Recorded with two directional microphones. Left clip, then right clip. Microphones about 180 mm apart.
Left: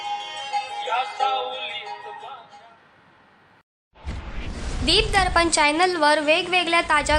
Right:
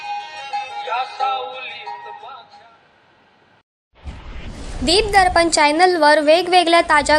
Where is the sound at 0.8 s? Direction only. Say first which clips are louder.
Right 2 dB; 20° left (ahead or behind).